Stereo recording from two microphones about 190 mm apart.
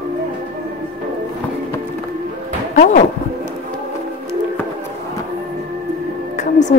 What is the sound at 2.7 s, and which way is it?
Speech, 40° left (ahead or behind).